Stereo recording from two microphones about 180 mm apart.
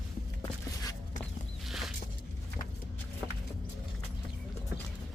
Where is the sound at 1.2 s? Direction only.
Centre (ahead or behind).